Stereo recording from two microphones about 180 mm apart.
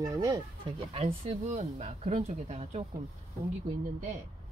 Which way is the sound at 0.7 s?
30° right (ahead or behind).